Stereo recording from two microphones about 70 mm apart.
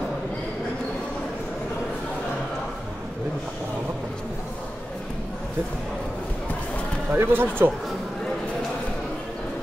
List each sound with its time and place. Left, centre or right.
7.1 s speech: right